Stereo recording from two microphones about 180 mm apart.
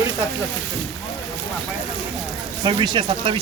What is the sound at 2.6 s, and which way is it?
Speech, 25° right (ahead or behind).